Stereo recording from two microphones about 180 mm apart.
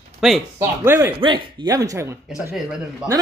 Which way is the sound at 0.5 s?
15° right (ahead or behind).